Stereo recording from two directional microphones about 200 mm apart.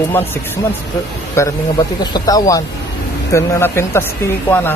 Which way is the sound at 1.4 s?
20° left (ahead or behind).